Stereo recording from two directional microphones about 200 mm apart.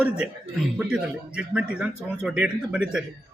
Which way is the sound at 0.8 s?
5° right (ahead or behind).